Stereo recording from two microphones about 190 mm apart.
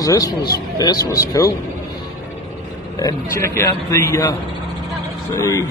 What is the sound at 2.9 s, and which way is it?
A man's voice, 15° left (ahead or behind).